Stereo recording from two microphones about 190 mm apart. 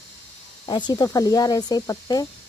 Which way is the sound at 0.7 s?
25° left (ahead or behind).